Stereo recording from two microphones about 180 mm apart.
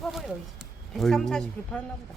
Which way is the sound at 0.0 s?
Centre (ahead or behind).